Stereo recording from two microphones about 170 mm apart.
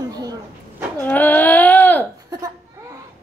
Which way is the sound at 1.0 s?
10° left (ahead or behind).